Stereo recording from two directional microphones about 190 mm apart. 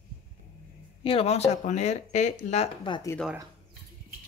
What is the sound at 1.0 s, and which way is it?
Speech, 30° left (ahead or behind).